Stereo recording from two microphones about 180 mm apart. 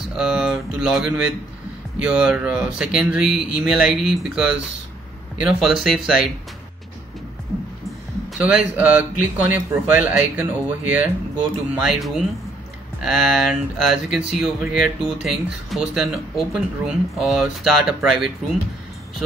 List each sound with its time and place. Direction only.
0.1 s a sound: 5° right (ahead or behind)
2.0 s speech: 5° right (ahead or behind)
8.3 s speech: 5° right (ahead or behind)